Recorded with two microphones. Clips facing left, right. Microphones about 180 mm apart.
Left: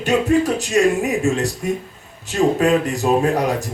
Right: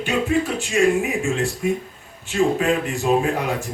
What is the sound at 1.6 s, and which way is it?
Speech, 40° left (ahead or behind).